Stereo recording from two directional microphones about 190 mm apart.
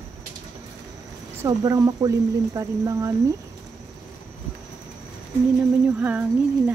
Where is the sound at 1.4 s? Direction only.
15° right (ahead or behind).